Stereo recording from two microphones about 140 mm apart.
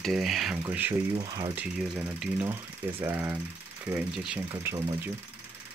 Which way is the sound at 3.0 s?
15° right (ahead or behind).